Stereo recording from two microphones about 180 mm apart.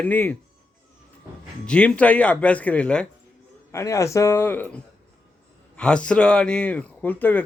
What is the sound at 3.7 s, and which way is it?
Speech, 15° left (ahead or behind).